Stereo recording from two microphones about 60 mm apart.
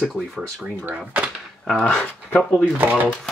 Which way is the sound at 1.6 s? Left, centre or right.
Centre.